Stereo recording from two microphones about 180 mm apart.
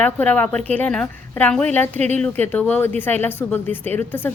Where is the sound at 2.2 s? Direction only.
10° left (ahead or behind).